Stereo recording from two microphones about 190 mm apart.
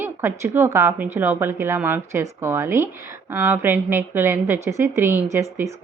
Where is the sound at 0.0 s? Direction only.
10° right (ahead or behind).